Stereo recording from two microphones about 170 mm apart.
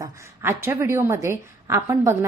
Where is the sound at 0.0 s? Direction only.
15° right (ahead or behind).